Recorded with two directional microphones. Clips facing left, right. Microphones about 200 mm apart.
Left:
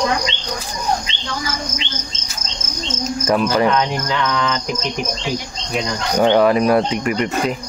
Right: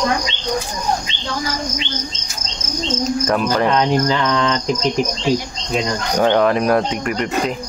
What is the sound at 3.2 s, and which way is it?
Speech, 5° left (ahead or behind).